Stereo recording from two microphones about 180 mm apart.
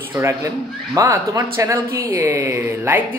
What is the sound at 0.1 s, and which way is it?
A woman's voice, 15° right (ahead or behind).